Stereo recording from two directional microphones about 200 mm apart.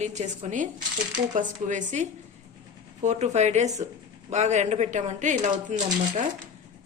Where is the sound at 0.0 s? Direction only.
35° right (ahead or behind).